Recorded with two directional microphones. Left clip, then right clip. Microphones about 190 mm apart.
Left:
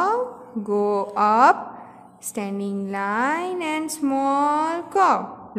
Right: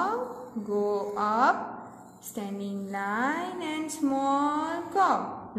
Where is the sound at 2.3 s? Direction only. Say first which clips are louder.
Left 8 dB; 25° left (ahead or behind).